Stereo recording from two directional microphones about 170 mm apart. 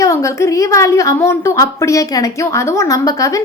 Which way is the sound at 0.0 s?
15° left (ahead or behind).